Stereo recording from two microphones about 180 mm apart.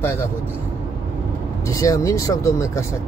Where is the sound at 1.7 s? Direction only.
20° left (ahead or behind).